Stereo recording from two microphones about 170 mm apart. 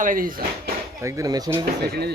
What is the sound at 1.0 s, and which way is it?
Speech, 20° right (ahead or behind).